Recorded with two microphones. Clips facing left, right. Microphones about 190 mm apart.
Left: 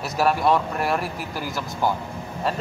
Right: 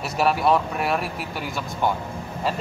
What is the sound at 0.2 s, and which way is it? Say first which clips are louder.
Speech: even; centre (ahead or behind).